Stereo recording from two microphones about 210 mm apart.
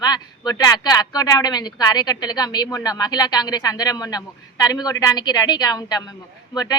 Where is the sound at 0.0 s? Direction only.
20° left (ahead or behind).